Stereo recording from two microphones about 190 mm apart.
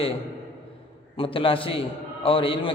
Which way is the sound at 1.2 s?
30° left (ahead or behind).